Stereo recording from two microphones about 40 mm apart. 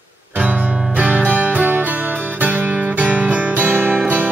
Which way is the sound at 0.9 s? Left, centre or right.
Right.